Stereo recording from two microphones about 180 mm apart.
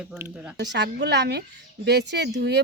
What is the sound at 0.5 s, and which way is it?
Speech, 70° right (ahead or behind).